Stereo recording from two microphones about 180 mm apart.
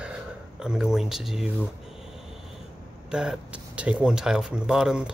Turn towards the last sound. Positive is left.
turn(degrees=-5)  # may be behind; listen again after turning